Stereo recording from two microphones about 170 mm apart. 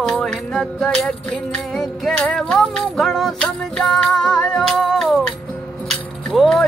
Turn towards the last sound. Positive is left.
turn(degrees=0)  # may be behind; listen again after turning